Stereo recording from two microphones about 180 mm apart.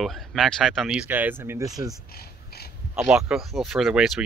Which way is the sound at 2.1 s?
60° left (ahead or behind).